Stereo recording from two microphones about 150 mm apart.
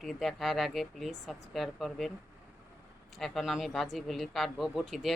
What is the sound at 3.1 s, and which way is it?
Speech, centre (ahead or behind).